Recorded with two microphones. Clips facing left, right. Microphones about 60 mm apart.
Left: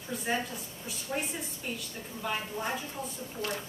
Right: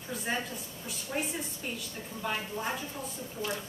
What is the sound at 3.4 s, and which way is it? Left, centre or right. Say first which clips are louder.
Speech: even; left.